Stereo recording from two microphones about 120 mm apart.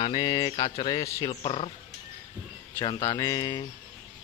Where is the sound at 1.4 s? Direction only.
50° left (ahead or behind).